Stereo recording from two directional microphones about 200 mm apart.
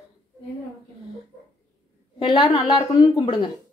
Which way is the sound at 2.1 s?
25° left (ahead or behind).